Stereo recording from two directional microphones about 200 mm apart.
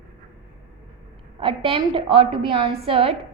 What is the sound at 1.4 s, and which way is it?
A woman's voice, 25° right (ahead or behind).